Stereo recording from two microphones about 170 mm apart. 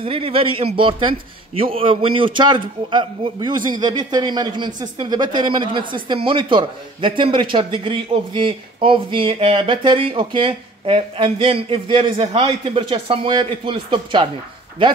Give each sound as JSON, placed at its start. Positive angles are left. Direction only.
{"t": 0.0, "sound": "a man's voice", "side_deg": -35}